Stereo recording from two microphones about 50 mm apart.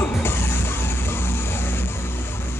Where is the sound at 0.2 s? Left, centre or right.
Left.